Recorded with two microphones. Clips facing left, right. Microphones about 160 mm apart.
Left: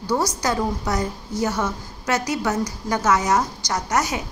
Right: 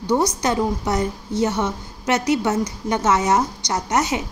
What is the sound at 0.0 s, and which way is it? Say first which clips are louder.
A woman's voice: right 3 dB; 20° right (ahead or behind).